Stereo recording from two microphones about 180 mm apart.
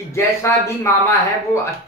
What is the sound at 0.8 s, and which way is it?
Speech, 15° left (ahead or behind).